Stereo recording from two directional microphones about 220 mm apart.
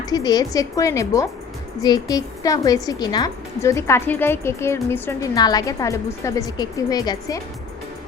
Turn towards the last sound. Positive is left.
turn(degrees=15)  # may be behind; listen again after turning